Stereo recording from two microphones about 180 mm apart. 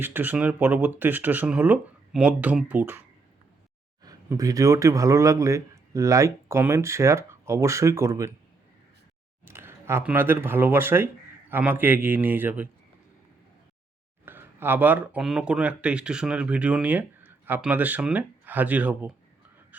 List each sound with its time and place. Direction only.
0.0 s speech: 10° right (ahead or behind)
4.0 s speech: 20° right (ahead or behind)
9.5 s speech: 15° right (ahead or behind)
14.3 s speech: 10° right (ahead or behind)